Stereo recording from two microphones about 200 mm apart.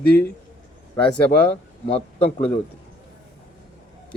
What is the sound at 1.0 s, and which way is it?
Speech, 5° left (ahead or behind).